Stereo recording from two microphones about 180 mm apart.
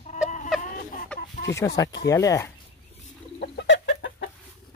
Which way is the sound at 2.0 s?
20° left (ahead or behind).